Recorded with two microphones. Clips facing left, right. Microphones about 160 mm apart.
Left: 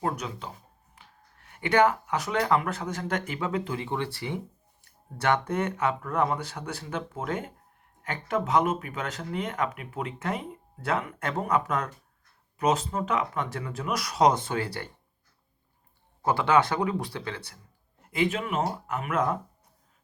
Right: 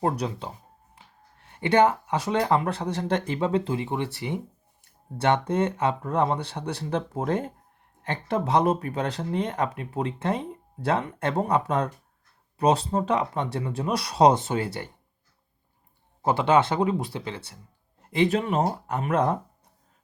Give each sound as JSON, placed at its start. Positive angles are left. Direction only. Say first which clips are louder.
{"t": 0.0, "sound": "speech", "louder": "right 4 dB", "side_deg": -30}
{"t": 16.2, "sound": "speech", "louder": "right 2 dB", "side_deg": -20}
{"t": 18.1, "sound": "speech", "louder": "right 4 dB", "side_deg": -35}